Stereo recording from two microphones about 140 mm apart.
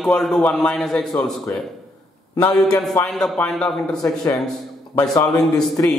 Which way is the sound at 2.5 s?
Centre (ahead or behind).